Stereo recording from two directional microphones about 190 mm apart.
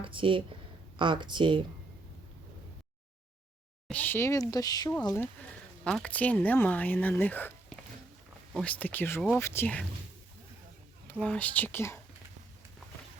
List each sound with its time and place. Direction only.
0.0 s speech: 25° right (ahead or behind)
3.8 s speech: 10° left (ahead or behind)
11.1 s speech: 5° left (ahead or behind)